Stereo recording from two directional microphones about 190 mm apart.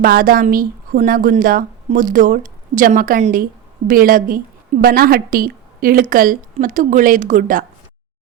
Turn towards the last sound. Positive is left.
turn(degrees=-45)  # may be behind; listen again after turning